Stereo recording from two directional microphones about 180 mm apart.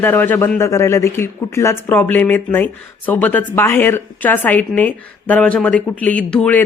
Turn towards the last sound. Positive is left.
turn(degrees=5)  # may be behind; listen again after turning